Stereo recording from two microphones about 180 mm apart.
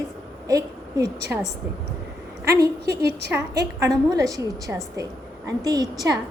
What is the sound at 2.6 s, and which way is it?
Speech, 65° right (ahead or behind).